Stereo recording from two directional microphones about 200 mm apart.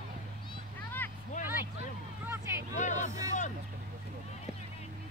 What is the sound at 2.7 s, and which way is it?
Hubbub, 35° left (ahead or behind).